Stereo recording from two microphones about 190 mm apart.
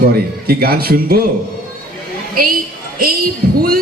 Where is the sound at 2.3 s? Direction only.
50° right (ahead or behind).